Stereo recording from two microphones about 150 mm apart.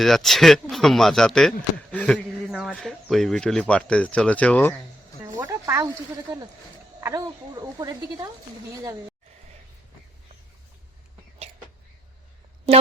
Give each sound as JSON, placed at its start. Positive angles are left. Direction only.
{"t": 0.0, "sound": "speech", "side_deg": 0}
{"t": 5.2, "sound": "a sound", "side_deg": -20}
{"t": 7.0, "sound": "speech", "side_deg": -25}